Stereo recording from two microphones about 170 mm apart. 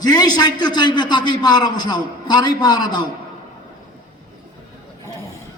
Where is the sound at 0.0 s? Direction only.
25° left (ahead or behind).